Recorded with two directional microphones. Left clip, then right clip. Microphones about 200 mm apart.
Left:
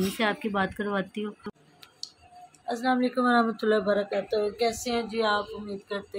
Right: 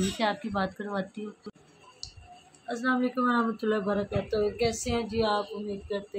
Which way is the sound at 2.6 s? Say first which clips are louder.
Left 2 dB; 15° left (ahead or behind).